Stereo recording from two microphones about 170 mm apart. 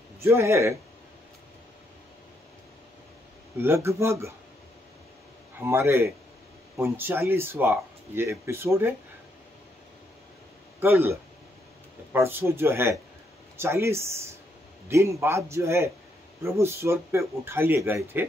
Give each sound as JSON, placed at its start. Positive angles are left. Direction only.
{"t": 0.2, "sound": "speech", "side_deg": -15}
{"t": 3.5, "sound": "speech", "side_deg": -15}
{"t": 5.6, "sound": "speech", "side_deg": -15}
{"t": 10.8, "sound": "speech", "side_deg": -15}
{"t": 12.1, "sound": "speech", "side_deg": -10}